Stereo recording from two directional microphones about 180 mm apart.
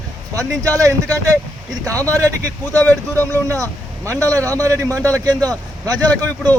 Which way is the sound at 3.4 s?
15° right (ahead or behind).